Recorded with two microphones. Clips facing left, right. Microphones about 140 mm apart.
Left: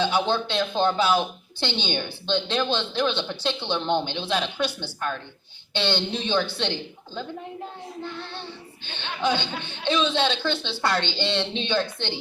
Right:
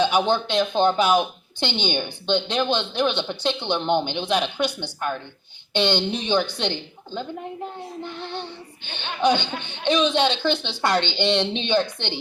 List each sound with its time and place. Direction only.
0.0 s speech: 15° right (ahead or behind)
8.0 s music: 20° right (ahead or behind)